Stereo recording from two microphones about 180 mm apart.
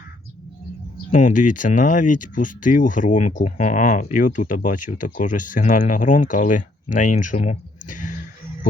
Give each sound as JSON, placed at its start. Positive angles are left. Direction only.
{"t": 1.1, "sound": "speech", "side_deg": 45}